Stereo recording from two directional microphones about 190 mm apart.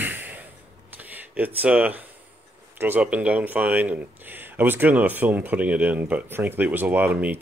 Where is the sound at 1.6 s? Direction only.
5° right (ahead or behind).